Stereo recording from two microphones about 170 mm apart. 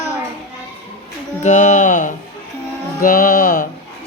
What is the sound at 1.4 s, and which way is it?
Speech, 45° left (ahead or behind).